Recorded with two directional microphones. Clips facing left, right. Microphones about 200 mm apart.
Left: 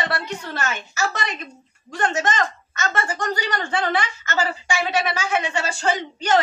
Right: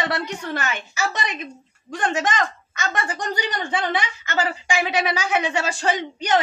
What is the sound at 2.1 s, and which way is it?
Speech, 15° right (ahead or behind).